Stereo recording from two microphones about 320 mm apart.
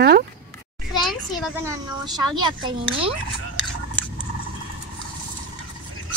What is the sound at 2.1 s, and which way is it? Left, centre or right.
Speech, centre.